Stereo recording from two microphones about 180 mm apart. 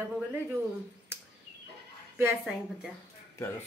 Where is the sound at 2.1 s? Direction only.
10° right (ahead or behind).